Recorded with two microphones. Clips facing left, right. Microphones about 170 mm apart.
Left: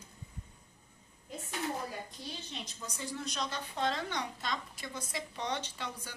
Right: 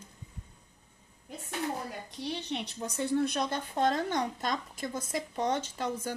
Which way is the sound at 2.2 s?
70° right (ahead or behind).